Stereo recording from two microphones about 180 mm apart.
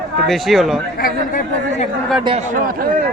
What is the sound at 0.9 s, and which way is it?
Speech, 55° left (ahead or behind).